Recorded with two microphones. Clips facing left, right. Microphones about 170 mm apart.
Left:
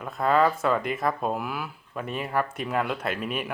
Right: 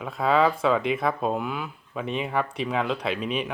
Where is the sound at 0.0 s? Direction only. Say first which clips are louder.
Right 1 dB; centre (ahead or behind).